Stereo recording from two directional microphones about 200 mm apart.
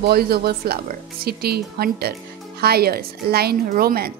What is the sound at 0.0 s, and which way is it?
Speech, 50° right (ahead or behind).